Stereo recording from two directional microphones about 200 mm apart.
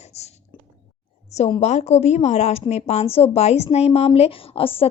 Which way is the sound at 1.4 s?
30° left (ahead or behind).